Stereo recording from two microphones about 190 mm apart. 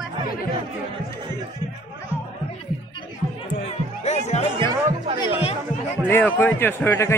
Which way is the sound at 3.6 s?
35° left (ahead or behind).